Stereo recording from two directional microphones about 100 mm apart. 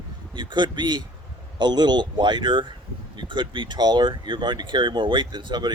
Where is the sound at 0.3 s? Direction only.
50° right (ahead or behind).